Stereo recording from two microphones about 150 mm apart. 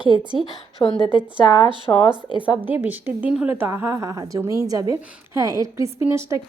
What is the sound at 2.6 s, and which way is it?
A woman's voice, 10° right (ahead or behind).